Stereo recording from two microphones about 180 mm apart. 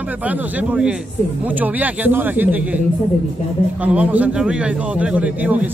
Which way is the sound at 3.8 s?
10° right (ahead or behind).